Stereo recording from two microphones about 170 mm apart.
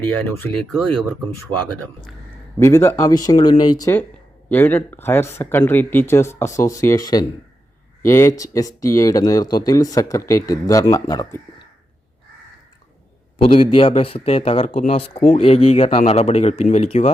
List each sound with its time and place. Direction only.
0.2 s speech: 10° left (ahead or behind)
2.6 s speech: 15° left (ahead or behind)
4.4 s speech: 10° left (ahead or behind)
13.5 s speech: 30° left (ahead or behind)